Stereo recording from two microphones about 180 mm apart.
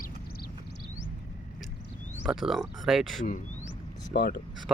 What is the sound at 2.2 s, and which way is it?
Speech, 5° right (ahead or behind).